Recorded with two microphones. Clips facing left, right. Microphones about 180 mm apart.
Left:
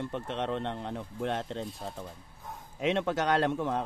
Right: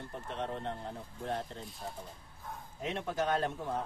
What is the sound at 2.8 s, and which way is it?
A man's voice, 80° left.